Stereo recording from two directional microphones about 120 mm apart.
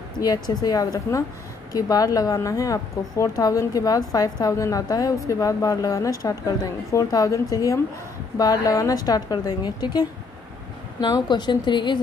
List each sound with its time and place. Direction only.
0.2 s a woman's voice: 35° left (ahead or behind)